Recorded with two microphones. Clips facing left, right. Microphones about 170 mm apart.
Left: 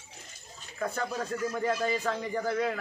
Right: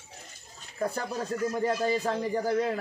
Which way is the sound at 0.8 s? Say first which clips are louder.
Right 1 dB; 35° right (ahead or behind).